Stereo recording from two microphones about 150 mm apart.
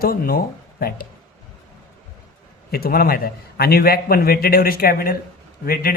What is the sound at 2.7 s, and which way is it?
A man's voice, 90° left.